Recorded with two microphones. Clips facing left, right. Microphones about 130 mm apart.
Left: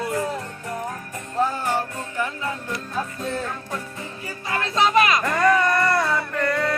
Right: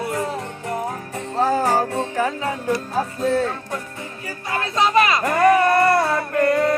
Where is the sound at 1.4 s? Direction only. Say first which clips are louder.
Right 6 dB; 90° right.